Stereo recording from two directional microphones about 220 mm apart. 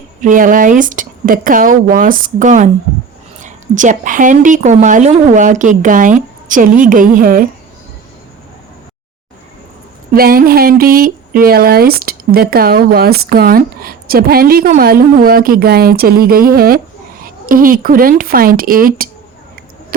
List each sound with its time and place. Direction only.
0.2 s a woman's voice: 35° right (ahead or behind)
10.2 s a woman's voice: 40° right (ahead or behind)